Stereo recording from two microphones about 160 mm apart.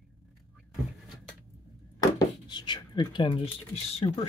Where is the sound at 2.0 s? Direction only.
25° left (ahead or behind).